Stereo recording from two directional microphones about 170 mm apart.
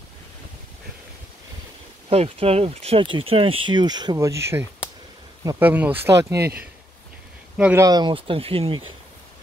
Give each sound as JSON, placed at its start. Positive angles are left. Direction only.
{"t": 2.0, "sound": "speech", "side_deg": -35}
{"t": 7.5, "sound": "speech", "side_deg": -5}
{"t": 7.8, "sound": "speech", "side_deg": -25}